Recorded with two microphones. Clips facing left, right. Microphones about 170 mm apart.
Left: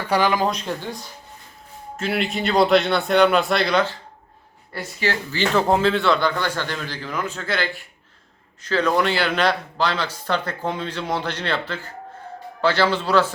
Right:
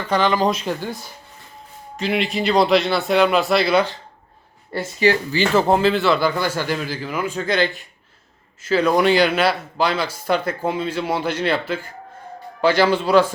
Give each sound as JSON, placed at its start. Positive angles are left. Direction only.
{"t": 0.0, "sound": "speech", "side_deg": 10}
{"t": 2.0, "sound": "speech", "side_deg": 0}
{"t": 4.7, "sound": "speech", "side_deg": -20}
{"t": 5.5, "sound": "speech", "side_deg": 0}